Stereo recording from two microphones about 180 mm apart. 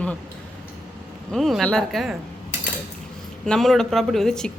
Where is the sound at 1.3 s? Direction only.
Centre (ahead or behind).